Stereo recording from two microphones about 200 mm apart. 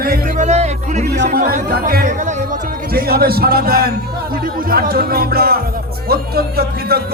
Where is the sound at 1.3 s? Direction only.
50° right (ahead or behind).